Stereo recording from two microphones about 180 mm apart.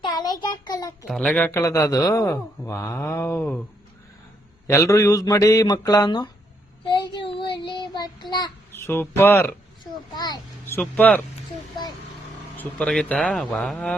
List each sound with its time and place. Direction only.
0.0 s child singing: 25° left (ahead or behind)
1.0 s speech: centre (ahead or behind)
4.6 s a man's voice: 15° left (ahead or behind)
6.8 s child singing: 25° left (ahead or behind)
8.7 s speech: 10° left (ahead or behind)
10.2 s a sound: 20° left (ahead or behind)
10.8 s speech: 10° left (ahead or behind)
12.5 s a man's voice: 5° left (ahead or behind)